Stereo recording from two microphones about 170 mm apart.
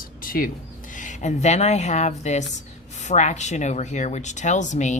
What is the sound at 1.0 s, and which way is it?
Speech, 45° left (ahead or behind).